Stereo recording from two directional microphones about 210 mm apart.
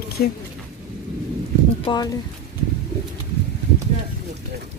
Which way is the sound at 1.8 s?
20° left (ahead or behind).